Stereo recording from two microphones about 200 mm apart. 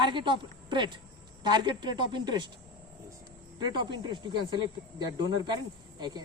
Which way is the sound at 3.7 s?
25° right (ahead or behind).